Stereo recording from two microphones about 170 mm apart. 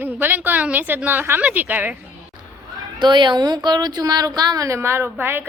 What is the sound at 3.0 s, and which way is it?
Speech, 30° right (ahead or behind).